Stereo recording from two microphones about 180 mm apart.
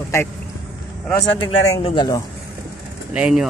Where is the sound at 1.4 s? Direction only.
30° left (ahead or behind).